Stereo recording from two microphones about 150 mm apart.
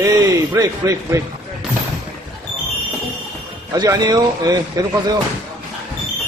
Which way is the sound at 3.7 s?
25° right (ahead or behind).